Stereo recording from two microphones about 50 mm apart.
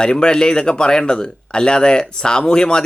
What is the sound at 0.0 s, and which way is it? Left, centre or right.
Speech, centre.